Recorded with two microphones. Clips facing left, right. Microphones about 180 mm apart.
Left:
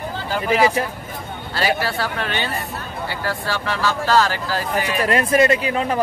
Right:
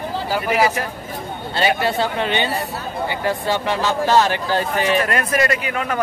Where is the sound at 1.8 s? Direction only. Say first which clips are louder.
Right 4 dB; 20° right (ahead or behind).